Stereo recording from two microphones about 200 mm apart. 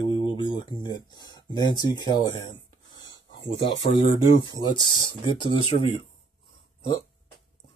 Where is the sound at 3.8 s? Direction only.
25° left (ahead or behind).